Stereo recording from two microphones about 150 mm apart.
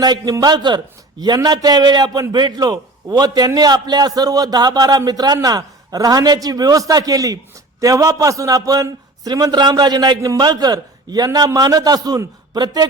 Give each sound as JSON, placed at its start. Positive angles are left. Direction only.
{"t": 0.0, "sound": "a man's voice", "side_deg": -25}